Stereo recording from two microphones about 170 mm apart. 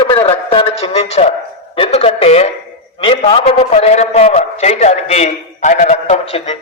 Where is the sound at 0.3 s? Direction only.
35° left (ahead or behind).